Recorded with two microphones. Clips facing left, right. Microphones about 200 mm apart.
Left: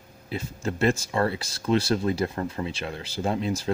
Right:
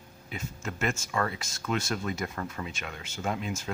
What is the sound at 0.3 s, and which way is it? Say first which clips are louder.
Speech: left 7 dB; 35° left (ahead or behind).